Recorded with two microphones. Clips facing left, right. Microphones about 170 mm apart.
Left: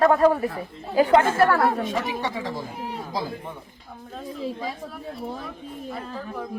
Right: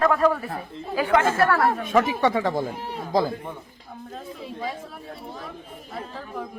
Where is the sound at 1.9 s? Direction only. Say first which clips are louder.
Right 7 dB; 55° right (ahead or behind).